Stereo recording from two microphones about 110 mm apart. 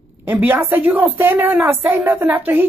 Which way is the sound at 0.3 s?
20° right (ahead or behind).